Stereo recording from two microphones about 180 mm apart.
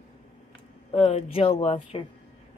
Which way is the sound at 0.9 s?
35° left (ahead or behind).